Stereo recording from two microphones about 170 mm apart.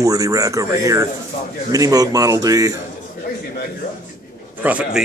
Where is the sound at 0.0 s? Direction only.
20° right (ahead or behind).